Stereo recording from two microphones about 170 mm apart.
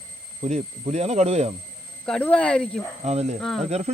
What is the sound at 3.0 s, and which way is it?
Speech, 40° right (ahead or behind).